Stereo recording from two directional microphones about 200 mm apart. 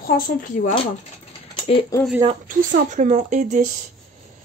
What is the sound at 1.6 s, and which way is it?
Speech, 25° left (ahead or behind).